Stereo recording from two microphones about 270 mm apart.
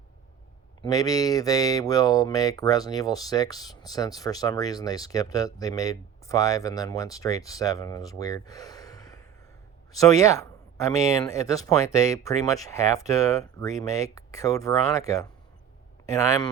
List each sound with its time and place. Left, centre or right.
0.8 s speech: centre